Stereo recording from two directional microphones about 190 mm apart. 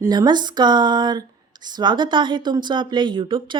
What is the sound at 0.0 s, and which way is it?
A woman's voice, 20° right (ahead or behind).